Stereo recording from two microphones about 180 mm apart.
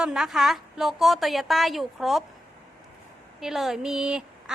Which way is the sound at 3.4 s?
Centre (ahead or behind).